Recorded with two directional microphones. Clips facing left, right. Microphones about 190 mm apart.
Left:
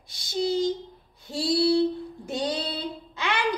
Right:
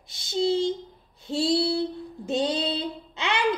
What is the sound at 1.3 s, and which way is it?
Child singing, 25° right (ahead or behind).